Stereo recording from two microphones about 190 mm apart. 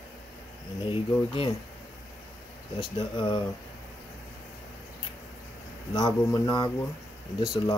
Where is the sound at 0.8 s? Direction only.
25° left (ahead or behind).